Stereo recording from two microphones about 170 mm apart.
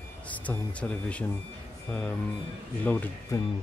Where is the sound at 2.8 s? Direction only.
10° left (ahead or behind).